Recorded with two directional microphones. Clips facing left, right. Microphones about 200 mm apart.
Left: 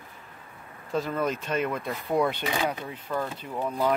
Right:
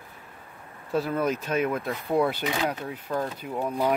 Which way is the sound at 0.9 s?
5° right (ahead or behind).